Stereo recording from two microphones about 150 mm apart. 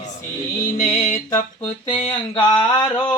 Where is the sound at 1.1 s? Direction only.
20° left (ahead or behind).